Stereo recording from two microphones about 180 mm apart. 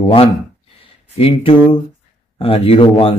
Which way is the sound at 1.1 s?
35° left (ahead or behind).